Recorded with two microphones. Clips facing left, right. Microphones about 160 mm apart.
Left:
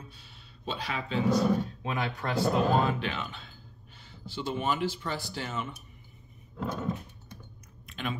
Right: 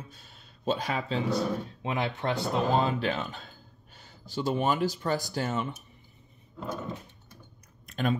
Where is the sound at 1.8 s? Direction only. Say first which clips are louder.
Right 2 dB; 25° right (ahead or behind).